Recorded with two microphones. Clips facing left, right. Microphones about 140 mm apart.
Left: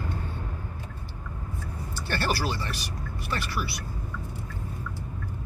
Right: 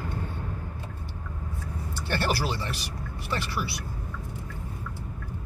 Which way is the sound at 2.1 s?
20° right (ahead or behind).